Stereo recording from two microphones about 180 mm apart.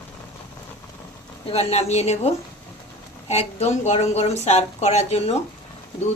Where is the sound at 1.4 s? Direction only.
35° left (ahead or behind).